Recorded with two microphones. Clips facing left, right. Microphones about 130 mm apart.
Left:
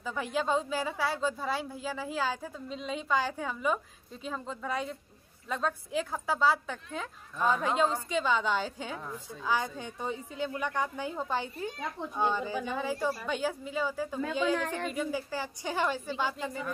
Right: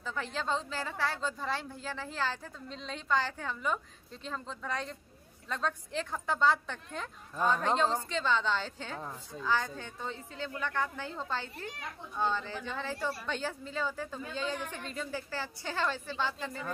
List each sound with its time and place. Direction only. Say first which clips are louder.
0.0 s a woman's voice: left 4 dB; 15° left (ahead or behind)
14.6 s a woman's voice: left 7 dB; 85° left
14.9 s a woman's voice: left 5 dB; 10° left (ahead or behind)